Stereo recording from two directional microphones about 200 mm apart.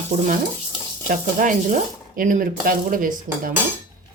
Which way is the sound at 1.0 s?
45° right (ahead or behind).